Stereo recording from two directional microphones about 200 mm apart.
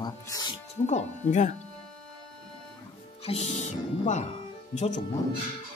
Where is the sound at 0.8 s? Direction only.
35° left (ahead or behind).